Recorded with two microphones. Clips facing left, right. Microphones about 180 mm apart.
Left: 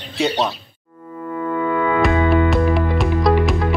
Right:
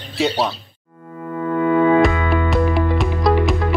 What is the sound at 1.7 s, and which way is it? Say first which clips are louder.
Music: right 7 dB; 40° right (ahead or behind).